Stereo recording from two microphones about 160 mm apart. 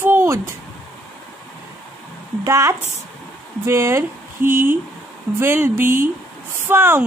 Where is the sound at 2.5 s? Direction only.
20° right (ahead or behind).